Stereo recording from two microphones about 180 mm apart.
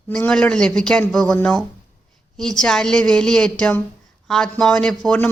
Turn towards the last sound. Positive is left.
turn(degrees=5)  # may be behind; listen again after turning